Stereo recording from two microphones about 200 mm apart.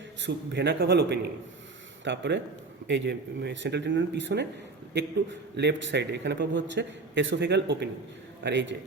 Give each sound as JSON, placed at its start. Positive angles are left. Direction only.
{"t": 0.2, "sound": "a man's voice", "side_deg": -60}
{"t": 5.5, "sound": "a man's voice", "side_deg": -60}